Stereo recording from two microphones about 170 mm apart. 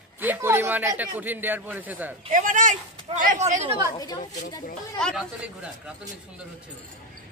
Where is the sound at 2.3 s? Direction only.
50° right (ahead or behind).